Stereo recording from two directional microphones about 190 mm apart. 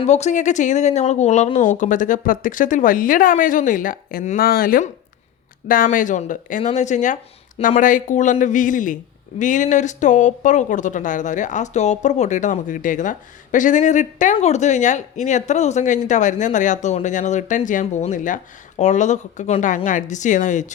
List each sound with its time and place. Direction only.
0.0 s speech: 35° left (ahead or behind)